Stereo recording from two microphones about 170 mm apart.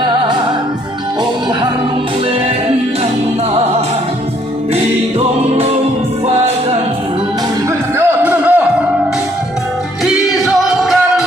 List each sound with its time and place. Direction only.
6.2 s music: 35° right (ahead or behind)
7.9 s a sound: 10° right (ahead or behind)
10.4 s music: centre (ahead or behind)